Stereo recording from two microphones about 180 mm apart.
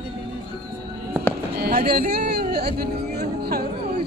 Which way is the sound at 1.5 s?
60° right (ahead or behind).